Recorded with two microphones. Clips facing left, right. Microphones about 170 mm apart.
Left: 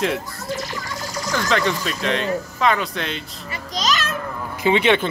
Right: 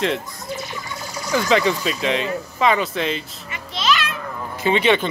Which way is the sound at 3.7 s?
40° left (ahead or behind).